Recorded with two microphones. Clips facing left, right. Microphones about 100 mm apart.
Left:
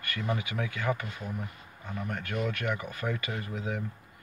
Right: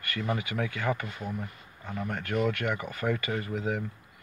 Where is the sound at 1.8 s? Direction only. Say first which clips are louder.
Right 2 dB; 20° right (ahead or behind).